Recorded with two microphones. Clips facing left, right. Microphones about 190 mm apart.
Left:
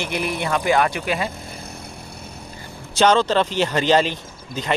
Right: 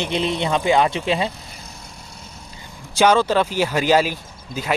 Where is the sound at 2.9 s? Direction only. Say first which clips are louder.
Right 1 dB; 10° right (ahead or behind).